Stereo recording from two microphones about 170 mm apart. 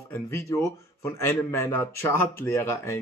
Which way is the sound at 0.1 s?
15° left (ahead or behind).